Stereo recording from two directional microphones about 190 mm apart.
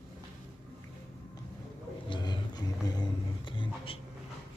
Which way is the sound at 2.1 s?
20° left (ahead or behind).